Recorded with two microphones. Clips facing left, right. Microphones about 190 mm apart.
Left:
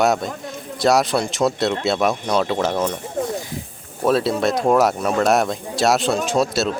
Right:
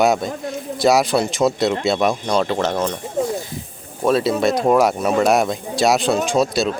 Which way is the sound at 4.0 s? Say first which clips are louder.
Right 1 dB; centre (ahead or behind).